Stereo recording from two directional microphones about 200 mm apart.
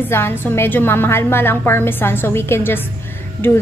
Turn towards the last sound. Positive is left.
turn(degrees=10)  # may be behind; listen again after turning